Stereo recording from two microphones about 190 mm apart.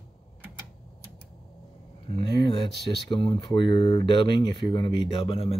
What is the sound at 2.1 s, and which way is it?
Speech, 25° left (ahead or behind).